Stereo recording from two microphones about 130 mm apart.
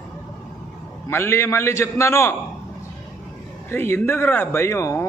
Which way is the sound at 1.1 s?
20° left (ahead or behind).